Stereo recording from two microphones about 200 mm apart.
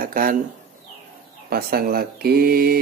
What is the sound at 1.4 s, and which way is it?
Speech, 50° right (ahead or behind).